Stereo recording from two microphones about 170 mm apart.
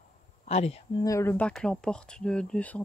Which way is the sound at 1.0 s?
15° left (ahead or behind).